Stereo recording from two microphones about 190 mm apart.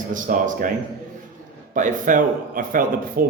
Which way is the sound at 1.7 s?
40° right (ahead or behind).